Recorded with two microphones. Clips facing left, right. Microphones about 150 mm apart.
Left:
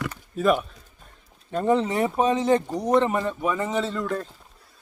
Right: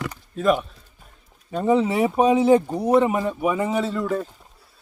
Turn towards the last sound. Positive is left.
turn(degrees=-5)  # may be behind; listen again after turning